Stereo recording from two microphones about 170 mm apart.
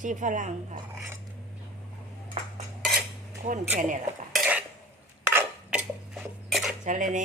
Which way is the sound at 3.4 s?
45° right (ahead or behind).